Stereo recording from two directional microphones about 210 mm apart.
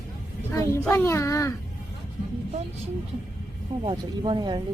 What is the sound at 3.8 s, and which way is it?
Speech, 25° right (ahead or behind).